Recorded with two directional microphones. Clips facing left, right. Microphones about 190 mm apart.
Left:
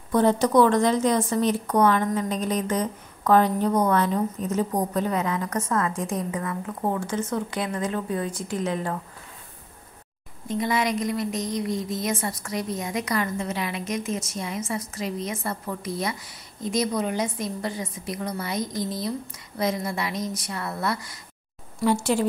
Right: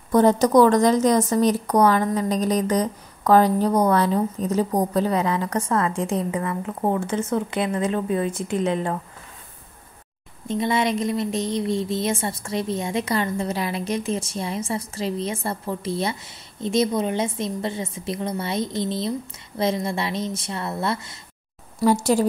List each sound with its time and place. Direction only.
0.1 s a woman's voice: 40° right (ahead or behind); by 8.9 s 25° right (ahead or behind)
10.5 s a woman's voice: 25° right (ahead or behind)
21.7 s a woman's voice: 40° right (ahead or behind)